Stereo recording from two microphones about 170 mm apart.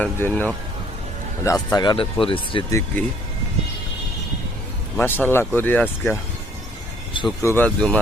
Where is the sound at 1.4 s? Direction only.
25° left (ahead or behind).